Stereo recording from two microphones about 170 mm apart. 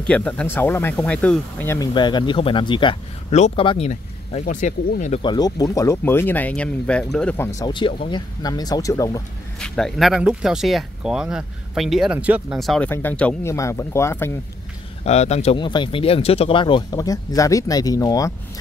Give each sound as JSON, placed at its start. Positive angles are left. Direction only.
{"t": 0.0, "sound": "speech", "side_deg": 5}
{"t": 2.0, "sound": "speech", "side_deg": 25}
{"t": 5.2, "sound": "speech", "side_deg": 25}
{"t": 9.6, "sound": "speech", "side_deg": 5}
{"t": 15.0, "sound": "a man's voice", "side_deg": 40}
{"t": 15.5, "sound": "speech", "side_deg": 30}